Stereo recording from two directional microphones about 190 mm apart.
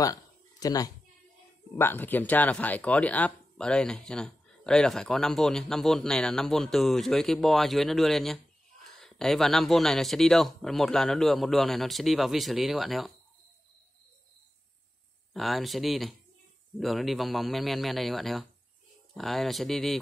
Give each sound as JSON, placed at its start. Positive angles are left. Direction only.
{"t": 0.0, "sound": "a sound", "side_deg": 20}
{"t": 1.8, "sound": "speech", "side_deg": 10}
{"t": 15.3, "sound": "speech", "side_deg": 0}